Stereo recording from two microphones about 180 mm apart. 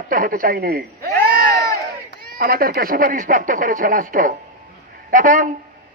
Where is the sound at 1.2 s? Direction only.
15° left (ahead or behind).